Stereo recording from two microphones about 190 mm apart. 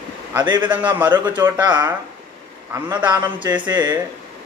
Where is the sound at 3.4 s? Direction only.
20° right (ahead or behind).